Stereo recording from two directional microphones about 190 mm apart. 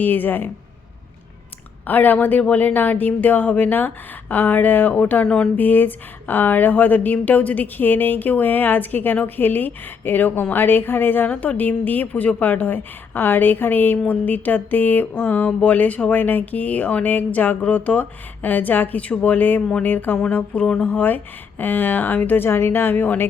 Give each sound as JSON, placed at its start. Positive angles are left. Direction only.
{"t": 0.0, "sound": "speech", "side_deg": 10}
{"t": 1.9, "sound": "speech", "side_deg": 10}